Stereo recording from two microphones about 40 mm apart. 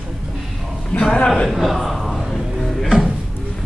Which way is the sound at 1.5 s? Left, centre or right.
Centre.